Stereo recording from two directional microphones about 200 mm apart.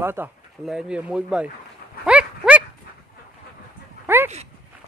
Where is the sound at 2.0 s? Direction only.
5° right (ahead or behind).